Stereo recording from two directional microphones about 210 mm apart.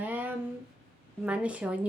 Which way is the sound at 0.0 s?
10° right (ahead or behind).